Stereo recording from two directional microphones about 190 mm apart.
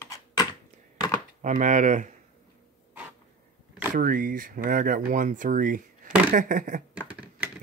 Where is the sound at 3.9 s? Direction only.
50° right (ahead or behind).